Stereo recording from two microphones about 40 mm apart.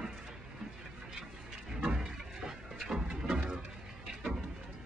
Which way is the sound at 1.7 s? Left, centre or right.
Right.